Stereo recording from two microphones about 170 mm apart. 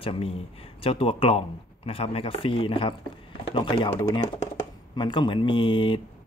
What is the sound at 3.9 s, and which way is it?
Speech, 20° left (ahead or behind).